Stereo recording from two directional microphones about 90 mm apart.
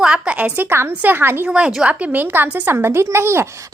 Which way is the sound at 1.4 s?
10° right (ahead or behind).